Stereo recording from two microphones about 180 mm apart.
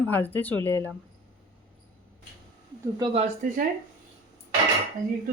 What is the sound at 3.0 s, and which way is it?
Speech, 30° right (ahead or behind).